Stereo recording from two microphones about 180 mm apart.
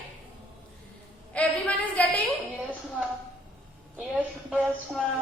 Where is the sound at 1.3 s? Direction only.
5° left (ahead or behind).